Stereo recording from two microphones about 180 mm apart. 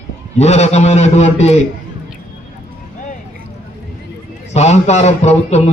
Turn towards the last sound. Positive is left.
turn(degrees=40)  # may be behind; listen again after turning